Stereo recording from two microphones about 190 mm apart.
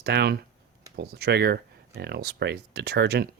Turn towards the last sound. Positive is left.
turn(degrees=-60)  # may be behind; listen again after turning